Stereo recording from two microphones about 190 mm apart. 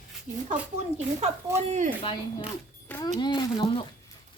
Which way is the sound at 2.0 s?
25° left (ahead or behind).